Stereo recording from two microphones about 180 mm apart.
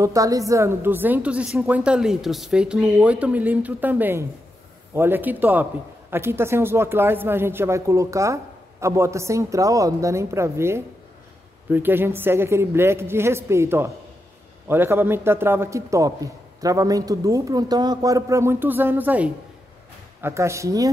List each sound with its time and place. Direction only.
0.0 s a man's voice: 20° right (ahead or behind)